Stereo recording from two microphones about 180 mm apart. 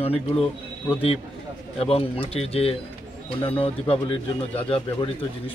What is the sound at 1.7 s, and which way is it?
Speech, 35° left (ahead or behind).